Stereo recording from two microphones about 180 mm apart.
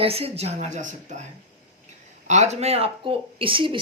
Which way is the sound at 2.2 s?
40° right (ahead or behind).